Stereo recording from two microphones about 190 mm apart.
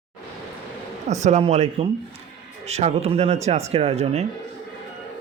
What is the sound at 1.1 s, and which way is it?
Speech, 35° right (ahead or behind).